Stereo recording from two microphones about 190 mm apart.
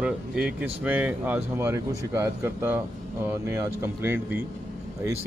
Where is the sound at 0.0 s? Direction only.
5° right (ahead or behind).